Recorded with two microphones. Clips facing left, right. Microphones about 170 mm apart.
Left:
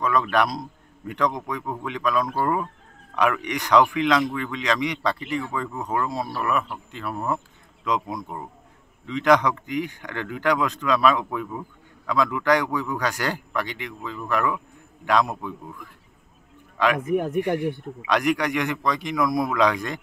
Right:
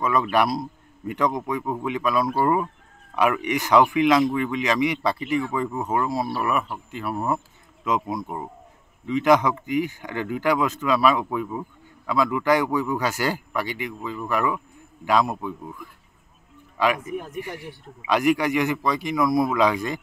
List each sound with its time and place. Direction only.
0.0 s a man's voice: 5° right (ahead or behind)
16.7 s speech: 5° right (ahead or behind)
17.0 s speech: 60° left (ahead or behind)
18.0 s speech: 5° right (ahead or behind)